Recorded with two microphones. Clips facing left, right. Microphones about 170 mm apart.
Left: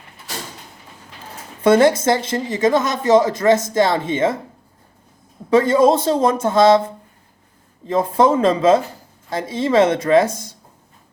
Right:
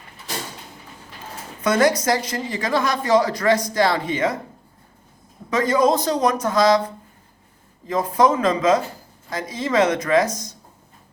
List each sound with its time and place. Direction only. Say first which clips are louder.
1.6 s speech: left 5 dB; 30° left (ahead or behind)
5.5 s speech: left 5 dB; 30° left (ahead or behind)